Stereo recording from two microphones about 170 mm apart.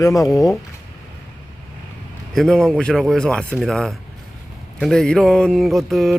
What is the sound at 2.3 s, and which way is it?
A man's voice, centre (ahead or behind).